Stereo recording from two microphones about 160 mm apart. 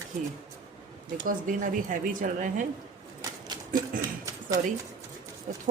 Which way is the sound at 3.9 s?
60° right (ahead or behind).